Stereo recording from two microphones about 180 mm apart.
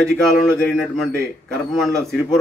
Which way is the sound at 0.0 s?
5° left (ahead or behind).